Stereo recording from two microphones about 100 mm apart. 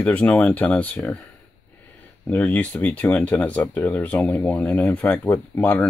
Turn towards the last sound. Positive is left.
turn(degrees=15)  # may be behind; listen again after turning